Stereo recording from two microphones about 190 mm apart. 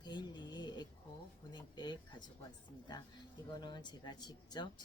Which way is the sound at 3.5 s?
25° left (ahead or behind).